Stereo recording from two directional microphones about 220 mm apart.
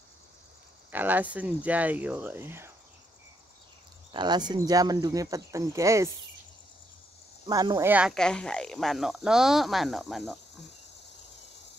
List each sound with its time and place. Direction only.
0.9 s speech: 10° right (ahead or behind)
4.1 s speech: 20° right (ahead or behind)
7.4 s speech: 15° right (ahead or behind); by 10.3 s centre (ahead or behind)